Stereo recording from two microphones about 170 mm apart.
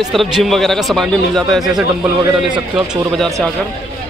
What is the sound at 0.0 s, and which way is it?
Speech, centre (ahead or behind).